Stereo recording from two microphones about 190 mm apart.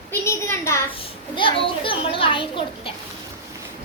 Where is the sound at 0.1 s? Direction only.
15° left (ahead or behind).